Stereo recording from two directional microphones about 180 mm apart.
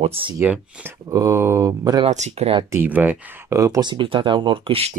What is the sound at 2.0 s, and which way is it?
Speech, 40° right (ahead or behind).